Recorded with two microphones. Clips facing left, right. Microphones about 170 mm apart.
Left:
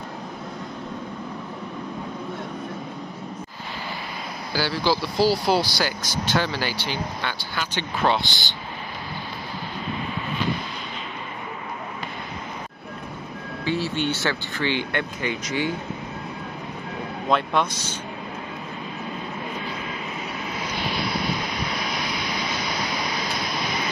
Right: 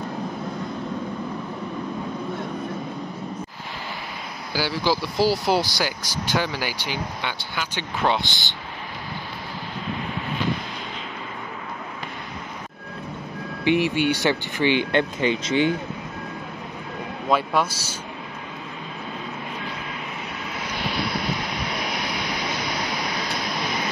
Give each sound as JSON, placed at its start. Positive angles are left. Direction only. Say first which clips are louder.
{"t": 4.6, "sound": "speech", "louder": "even", "side_deg": -15}
{"t": 13.7, "sound": "speech", "louder": "right 5 dB", "side_deg": -15}
{"t": 17.3, "sound": "speech", "louder": "right 1 dB", "side_deg": -5}